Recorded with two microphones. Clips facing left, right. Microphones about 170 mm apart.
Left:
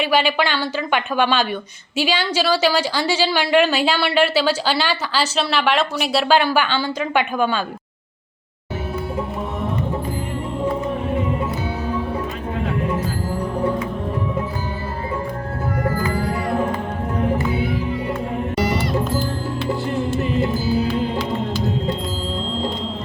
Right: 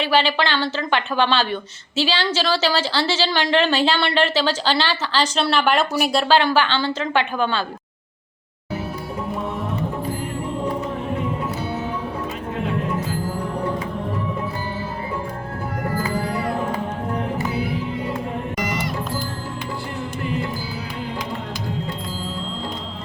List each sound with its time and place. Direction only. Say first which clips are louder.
0.0 s a woman's voice: left 1 dB; 15° left (ahead or behind)
6.2 s a woman's voice: left 2 dB; 15° left (ahead or behind)
20.1 s music: left 5 dB; 20° left (ahead or behind)